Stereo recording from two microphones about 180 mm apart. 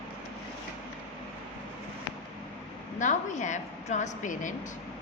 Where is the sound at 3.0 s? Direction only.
45° left (ahead or behind).